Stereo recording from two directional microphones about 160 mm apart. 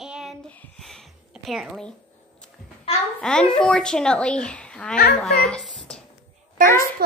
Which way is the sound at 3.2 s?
5° left (ahead or behind).